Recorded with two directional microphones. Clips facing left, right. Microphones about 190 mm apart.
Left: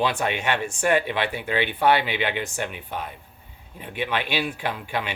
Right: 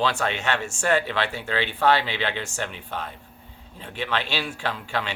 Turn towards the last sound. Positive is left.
turn(degrees=15)  # may be behind; listen again after turning